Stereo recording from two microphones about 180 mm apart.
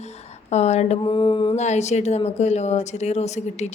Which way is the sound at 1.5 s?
40° left (ahead or behind).